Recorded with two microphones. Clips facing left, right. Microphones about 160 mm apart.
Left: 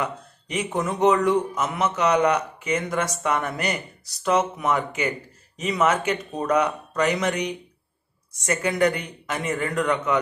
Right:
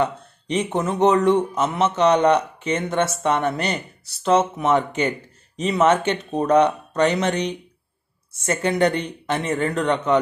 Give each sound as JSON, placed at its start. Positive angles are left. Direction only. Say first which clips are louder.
{"t": 0.0, "sound": "a man's voice", "louder": "right 6 dB", "side_deg": -30}
{"t": 8.5, "sound": "a man's voice", "louder": "right 2 dB", "side_deg": -30}